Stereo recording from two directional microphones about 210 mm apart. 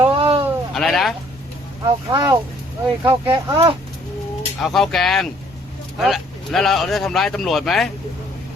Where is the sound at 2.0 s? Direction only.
20° right (ahead or behind).